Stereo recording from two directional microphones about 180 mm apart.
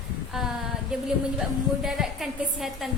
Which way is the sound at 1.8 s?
Centre (ahead or behind).